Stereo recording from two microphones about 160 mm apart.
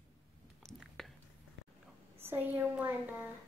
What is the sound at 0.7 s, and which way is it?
Chewing, centre (ahead or behind).